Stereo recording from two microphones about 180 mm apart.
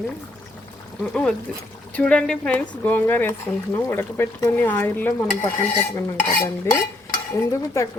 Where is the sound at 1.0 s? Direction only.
5° left (ahead or behind).